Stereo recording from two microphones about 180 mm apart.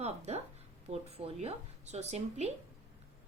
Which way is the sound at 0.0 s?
35° right (ahead or behind).